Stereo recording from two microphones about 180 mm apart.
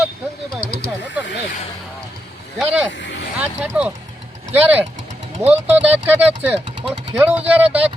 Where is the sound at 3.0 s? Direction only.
90° left.